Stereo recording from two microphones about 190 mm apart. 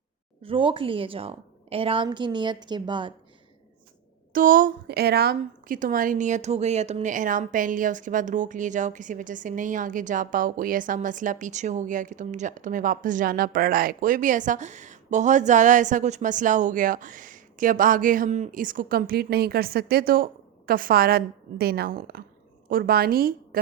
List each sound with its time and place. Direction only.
0.4 s a woman's voice: 25° right (ahead or behind)
4.3 s a woman's voice: 45° right (ahead or behind)